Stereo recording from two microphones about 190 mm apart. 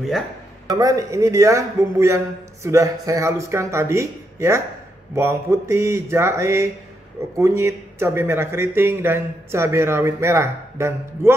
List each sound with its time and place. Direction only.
0.7 s speech: 20° right (ahead or behind)